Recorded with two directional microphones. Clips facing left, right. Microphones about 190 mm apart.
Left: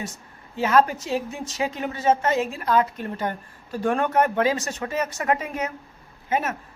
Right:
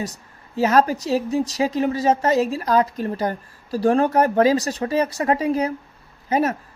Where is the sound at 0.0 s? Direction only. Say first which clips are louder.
Right 5 dB; 40° right (ahead or behind).